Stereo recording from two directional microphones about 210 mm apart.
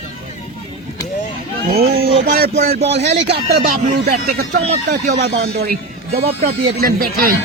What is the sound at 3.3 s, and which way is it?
Speech, 50° right (ahead or behind).